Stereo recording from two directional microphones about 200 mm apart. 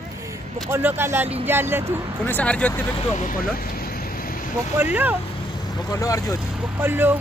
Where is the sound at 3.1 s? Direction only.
40° left (ahead or behind).